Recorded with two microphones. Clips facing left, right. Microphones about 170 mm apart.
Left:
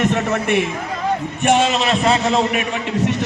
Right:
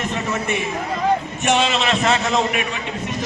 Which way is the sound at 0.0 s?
65° left (ahead or behind).